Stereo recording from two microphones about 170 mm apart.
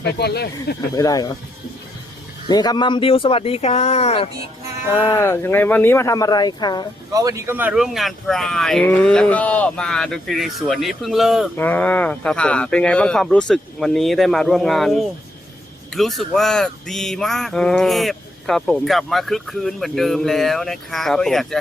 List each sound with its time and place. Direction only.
0.0 s speech: 70° left (ahead or behind)
0.9 s speech: 20° left (ahead or behind)
2.5 s speech: 25° left (ahead or behind)
4.9 s speech: 20° left (ahead or behind)
7.1 s speech: 20° right (ahead or behind); by 11.4 s centre (ahead or behind)
11.5 s speech: 10° left (ahead or behind)